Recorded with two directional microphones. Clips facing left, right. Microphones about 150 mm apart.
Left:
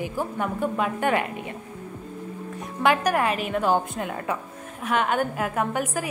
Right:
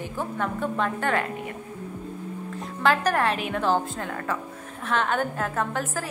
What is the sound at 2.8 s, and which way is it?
Speech, 15° left (ahead or behind).